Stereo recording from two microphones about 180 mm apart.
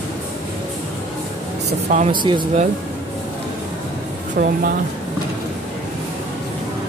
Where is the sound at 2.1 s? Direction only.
25° right (ahead or behind).